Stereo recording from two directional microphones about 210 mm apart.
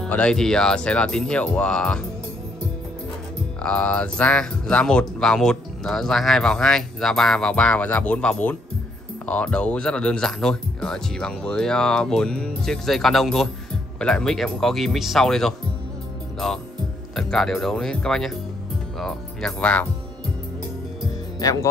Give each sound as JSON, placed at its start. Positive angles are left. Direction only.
{"t": 0.0, "sound": "speech", "side_deg": 5}
{"t": 3.6, "sound": "speech", "side_deg": 5}
{"t": 17.1, "sound": "speech", "side_deg": 5}
{"t": 21.4, "sound": "speech", "side_deg": 15}